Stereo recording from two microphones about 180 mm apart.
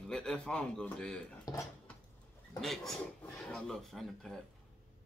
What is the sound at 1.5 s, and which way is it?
Dishes, 20° left (ahead or behind).